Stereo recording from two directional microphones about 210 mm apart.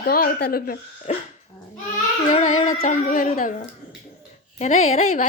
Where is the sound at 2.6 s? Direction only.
35° left (ahead or behind).